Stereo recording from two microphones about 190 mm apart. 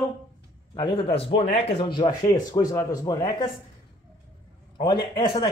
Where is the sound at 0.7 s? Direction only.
25° left (ahead or behind).